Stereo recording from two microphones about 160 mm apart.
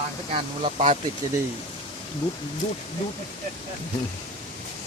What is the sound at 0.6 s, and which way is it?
Speech, 45° right (ahead or behind).